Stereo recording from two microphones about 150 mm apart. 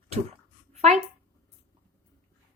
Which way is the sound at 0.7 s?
50° right (ahead or behind).